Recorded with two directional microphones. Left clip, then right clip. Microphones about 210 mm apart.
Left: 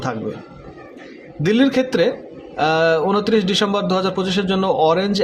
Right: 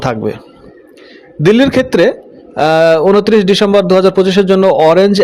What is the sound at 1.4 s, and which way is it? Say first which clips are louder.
A man's voice: right 8 dB; 35° right (ahead or behind).